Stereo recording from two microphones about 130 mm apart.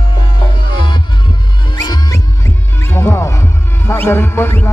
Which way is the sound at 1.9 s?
25° left (ahead or behind).